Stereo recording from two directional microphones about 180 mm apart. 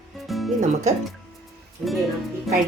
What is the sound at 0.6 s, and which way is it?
Speech, 40° right (ahead or behind).